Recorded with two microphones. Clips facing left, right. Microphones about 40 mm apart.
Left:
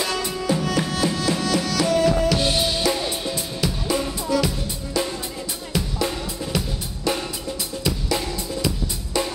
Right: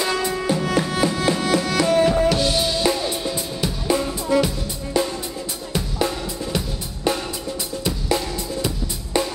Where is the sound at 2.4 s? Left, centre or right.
Left.